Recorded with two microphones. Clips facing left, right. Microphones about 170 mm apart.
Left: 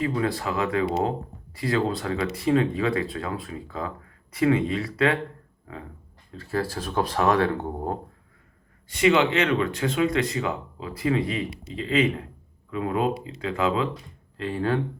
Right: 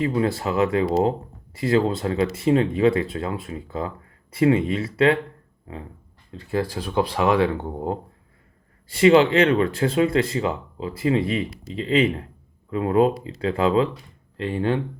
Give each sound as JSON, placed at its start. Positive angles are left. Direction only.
{"t": 0.0, "sound": "speech", "side_deg": -25}
{"t": 6.3, "sound": "speech", "side_deg": -20}
{"t": 8.9, "sound": "speech", "side_deg": -30}